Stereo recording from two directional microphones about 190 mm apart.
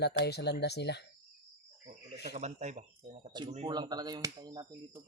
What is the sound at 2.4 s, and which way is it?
Speech, 35° right (ahead or behind).